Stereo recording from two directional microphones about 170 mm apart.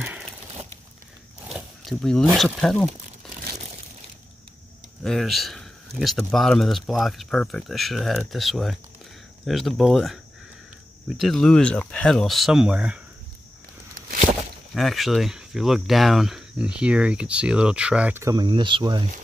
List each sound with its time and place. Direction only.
1.5 s zipper: 5° right (ahead or behind)
1.9 s speech: centre (ahead or behind)
5.0 s speech: centre (ahead or behind)
14.7 s speech: centre (ahead or behind); by 19.0 s 30° right (ahead or behind)